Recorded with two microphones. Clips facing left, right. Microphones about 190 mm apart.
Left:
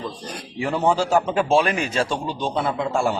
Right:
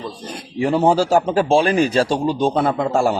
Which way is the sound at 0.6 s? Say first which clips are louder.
Right 5 dB; 35° right (ahead or behind).